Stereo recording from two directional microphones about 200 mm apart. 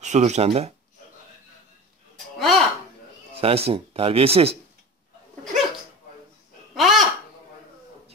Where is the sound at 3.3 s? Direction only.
30° right (ahead or behind).